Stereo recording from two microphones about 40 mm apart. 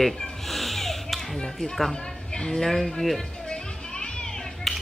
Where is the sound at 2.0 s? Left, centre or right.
Centre.